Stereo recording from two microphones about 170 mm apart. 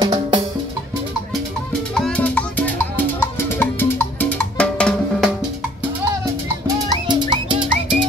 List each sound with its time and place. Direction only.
0.0 s music: 25° right (ahead or behind)
1.7 s music: 5° left (ahead or behind)
7.1 s music: 25° right (ahead or behind)